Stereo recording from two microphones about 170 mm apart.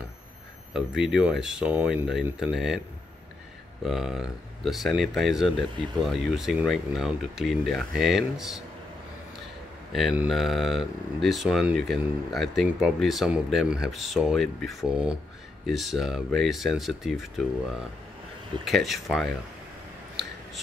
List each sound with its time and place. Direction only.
0.7 s speech: 5° right (ahead or behind)
3.8 s speech: centre (ahead or behind)
9.9 s speech: centre (ahead or behind)